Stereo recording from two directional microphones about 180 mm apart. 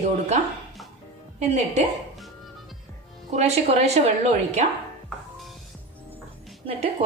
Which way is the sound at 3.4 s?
35° right (ahead or behind).